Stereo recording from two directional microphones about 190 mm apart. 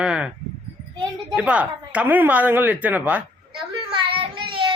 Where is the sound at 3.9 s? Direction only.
25° right (ahead or behind).